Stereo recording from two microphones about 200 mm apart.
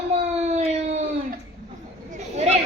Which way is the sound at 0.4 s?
35° right (ahead or behind).